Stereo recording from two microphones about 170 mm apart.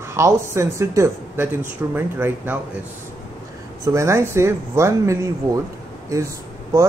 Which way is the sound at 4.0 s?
15° right (ahead or behind).